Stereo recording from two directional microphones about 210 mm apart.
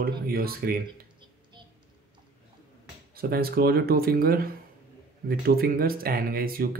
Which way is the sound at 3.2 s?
45° right (ahead or behind).